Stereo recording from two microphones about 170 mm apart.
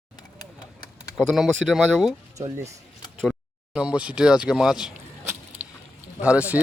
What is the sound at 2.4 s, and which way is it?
Speech, 20° right (ahead or behind).